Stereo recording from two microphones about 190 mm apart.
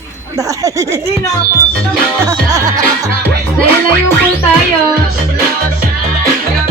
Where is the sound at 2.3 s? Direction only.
20° right (ahead or behind).